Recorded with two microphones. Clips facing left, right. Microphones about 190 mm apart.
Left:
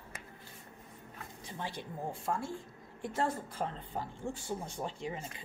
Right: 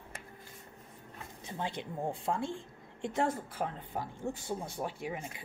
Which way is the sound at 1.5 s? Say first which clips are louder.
Right 4 dB; 20° right (ahead or behind).